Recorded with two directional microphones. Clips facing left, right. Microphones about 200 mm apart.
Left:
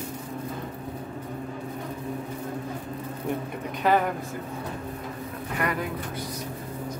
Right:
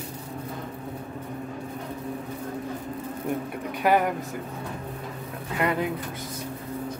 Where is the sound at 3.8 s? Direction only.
10° right (ahead or behind).